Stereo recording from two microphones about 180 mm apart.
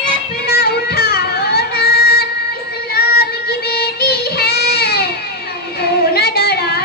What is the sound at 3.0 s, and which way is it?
Child singing, 60° left (ahead or behind).